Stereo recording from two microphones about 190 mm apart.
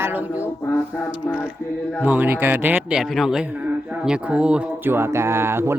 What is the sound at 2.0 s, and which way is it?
Speech, 10° right (ahead or behind).